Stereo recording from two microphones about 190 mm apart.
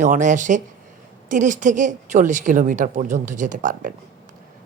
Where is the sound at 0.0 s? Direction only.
40° right (ahead or behind).